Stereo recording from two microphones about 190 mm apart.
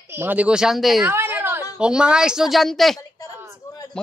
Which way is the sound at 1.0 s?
10° right (ahead or behind).